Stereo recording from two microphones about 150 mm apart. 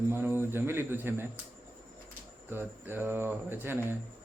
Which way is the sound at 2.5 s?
15° right (ahead or behind).